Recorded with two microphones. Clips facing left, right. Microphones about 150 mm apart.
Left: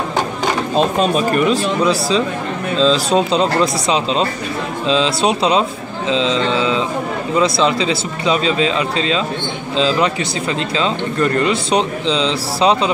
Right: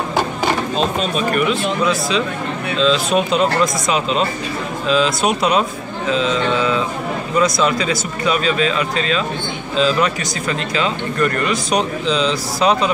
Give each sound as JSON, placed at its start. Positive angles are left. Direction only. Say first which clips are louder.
{"t": 1.1, "sound": "speech", "louder": "left 3 dB", "side_deg": 35}
{"t": 4.8, "sound": "speech", "louder": "left 1 dB", "side_deg": 25}